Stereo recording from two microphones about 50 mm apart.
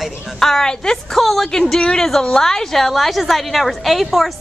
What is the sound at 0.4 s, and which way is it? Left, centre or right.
A woman's voice, centre.